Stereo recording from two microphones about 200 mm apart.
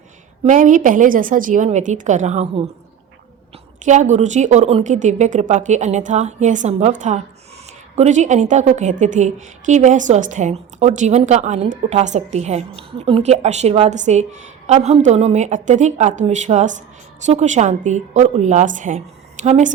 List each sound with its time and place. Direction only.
0.4 s a woman's voice: 40° right (ahead or behind)
3.8 s a woman's voice: 35° right (ahead or behind)